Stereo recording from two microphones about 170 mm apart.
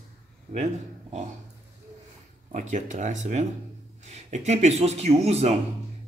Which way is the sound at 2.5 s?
45° right (ahead or behind).